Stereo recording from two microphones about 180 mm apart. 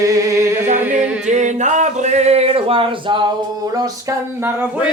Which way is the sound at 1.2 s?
40° right (ahead or behind).